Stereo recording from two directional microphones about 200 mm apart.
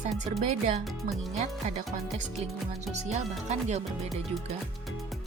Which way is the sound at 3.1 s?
35° right (ahead or behind).